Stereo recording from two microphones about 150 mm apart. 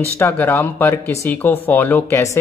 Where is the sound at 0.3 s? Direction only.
15° left (ahead or behind).